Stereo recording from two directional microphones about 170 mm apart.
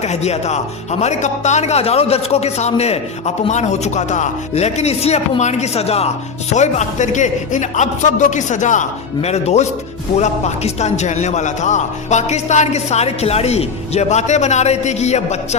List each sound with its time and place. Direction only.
0.0 s speech: 40° left (ahead or behind)